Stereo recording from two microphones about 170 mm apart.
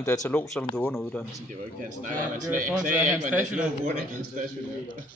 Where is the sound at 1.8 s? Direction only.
50° right (ahead or behind).